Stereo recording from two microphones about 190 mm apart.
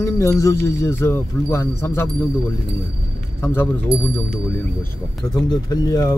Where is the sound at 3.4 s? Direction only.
10° left (ahead or behind).